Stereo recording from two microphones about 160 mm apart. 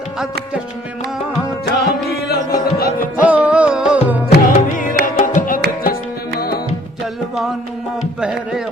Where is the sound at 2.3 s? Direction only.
70° left (ahead or behind).